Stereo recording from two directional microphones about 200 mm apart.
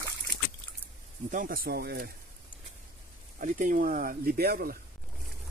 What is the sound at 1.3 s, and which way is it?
Speech, 45° right (ahead or behind).